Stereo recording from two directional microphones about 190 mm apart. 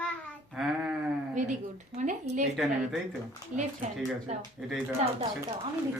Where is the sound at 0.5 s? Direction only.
5° right (ahead or behind).